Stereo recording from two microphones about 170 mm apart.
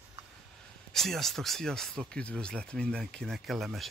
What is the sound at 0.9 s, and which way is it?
Speech, centre (ahead or behind).